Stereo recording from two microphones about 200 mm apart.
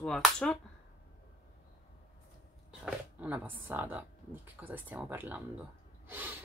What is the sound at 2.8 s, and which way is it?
Speech, 5° right (ahead or behind).